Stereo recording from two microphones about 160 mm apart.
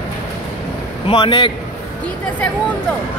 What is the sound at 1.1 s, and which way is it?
Speech, 30° left (ahead or behind).